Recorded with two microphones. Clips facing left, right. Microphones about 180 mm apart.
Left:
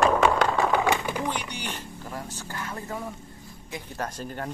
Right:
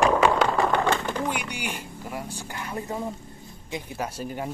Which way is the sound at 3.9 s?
10° right (ahead or behind).